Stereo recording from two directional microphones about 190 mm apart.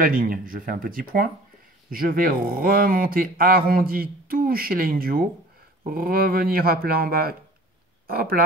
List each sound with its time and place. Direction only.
0.0 s speech: 50° right (ahead or behind)